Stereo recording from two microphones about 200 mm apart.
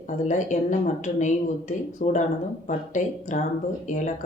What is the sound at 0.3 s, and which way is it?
Speech, 35° left (ahead or behind).